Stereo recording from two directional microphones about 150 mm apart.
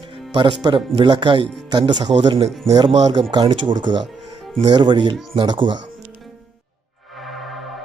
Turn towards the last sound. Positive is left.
turn(degrees=0)  # may be behind; listen again after turning